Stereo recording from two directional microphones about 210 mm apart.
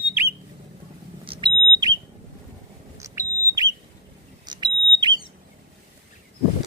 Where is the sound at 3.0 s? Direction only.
15° right (ahead or behind).